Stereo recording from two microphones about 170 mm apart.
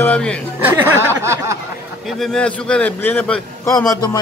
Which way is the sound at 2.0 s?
Centre (ahead or behind).